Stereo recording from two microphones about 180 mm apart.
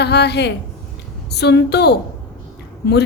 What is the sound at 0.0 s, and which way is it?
A woman's voice, 65° left (ahead or behind).